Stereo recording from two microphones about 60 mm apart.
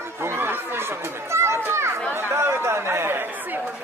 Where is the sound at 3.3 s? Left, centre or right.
Right.